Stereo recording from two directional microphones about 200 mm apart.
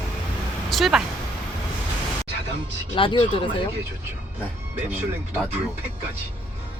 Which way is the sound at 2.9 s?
25° left (ahead or behind).